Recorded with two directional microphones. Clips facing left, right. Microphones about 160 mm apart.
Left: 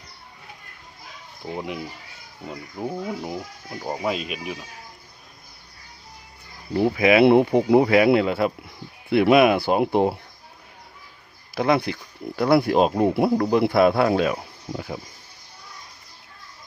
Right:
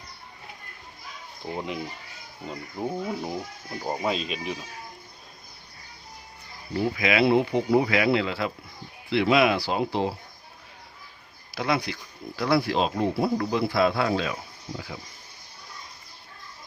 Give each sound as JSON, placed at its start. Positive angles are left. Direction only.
{"t": 1.5, "sound": "speech", "side_deg": 10}
{"t": 7.2, "sound": "speech", "side_deg": 55}
{"t": 11.5, "sound": "speech", "side_deg": 50}